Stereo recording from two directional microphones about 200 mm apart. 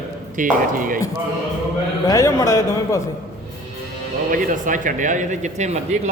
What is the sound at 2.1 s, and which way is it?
Speech, 15° left (ahead or behind).